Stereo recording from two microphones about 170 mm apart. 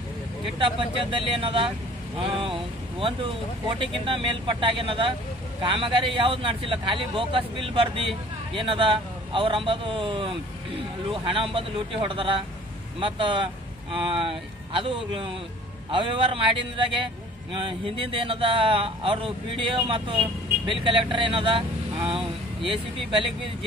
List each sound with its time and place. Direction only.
0.6 s a man's voice: 30° right (ahead or behind)